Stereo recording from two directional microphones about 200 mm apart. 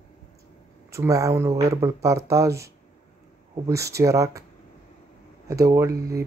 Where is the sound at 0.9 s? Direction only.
15° right (ahead or behind).